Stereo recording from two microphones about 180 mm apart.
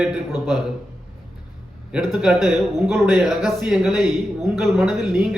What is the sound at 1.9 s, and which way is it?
Speech, centre (ahead or behind).